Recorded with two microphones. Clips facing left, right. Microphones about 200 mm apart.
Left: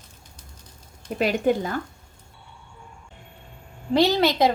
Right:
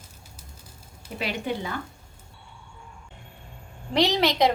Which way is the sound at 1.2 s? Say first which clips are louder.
Left 8 dB; 45° left (ahead or behind).